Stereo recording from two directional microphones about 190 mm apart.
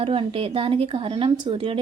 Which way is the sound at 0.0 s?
30° right (ahead or behind).